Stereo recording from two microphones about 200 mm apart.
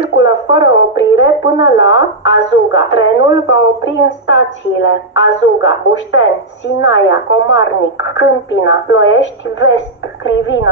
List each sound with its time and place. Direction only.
0.0 s radio: 65° left (ahead or behind)
1.6 s a woman's voice: 65° left (ahead or behind)